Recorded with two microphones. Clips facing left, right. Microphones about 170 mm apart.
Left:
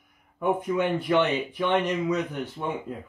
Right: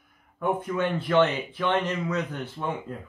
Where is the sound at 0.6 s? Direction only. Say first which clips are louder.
Left 2 dB; 15° left (ahead or behind).